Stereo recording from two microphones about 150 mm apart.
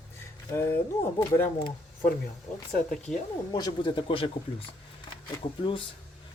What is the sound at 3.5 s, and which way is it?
Speech, 30° left (ahead or behind).